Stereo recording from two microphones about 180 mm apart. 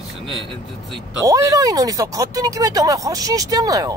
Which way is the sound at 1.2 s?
20° right (ahead or behind).